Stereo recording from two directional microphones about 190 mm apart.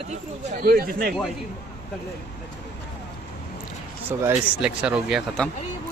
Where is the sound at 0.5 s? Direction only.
50° right (ahead or behind).